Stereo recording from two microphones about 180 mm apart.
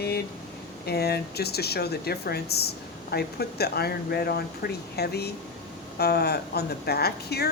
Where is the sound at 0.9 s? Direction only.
60° left (ahead or behind).